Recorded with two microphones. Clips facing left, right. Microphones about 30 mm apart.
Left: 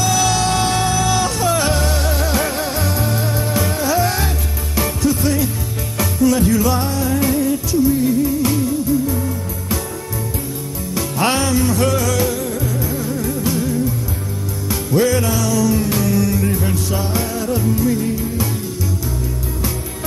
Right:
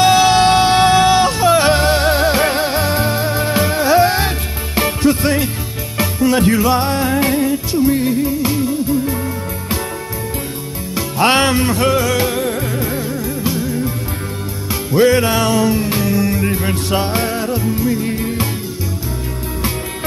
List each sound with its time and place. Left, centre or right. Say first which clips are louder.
0.0 s music: right 7 dB; right
11.2 s music: right 4 dB; right
12.3 s music: right 3 dB; right
13.1 s music: even; centre
14.7 s music: right 4 dB; right
15.7 s music: right 1 dB; right
16.7 s music: right 3 dB; right
17.5 s music: even; right
18.0 s music: right 1 dB; right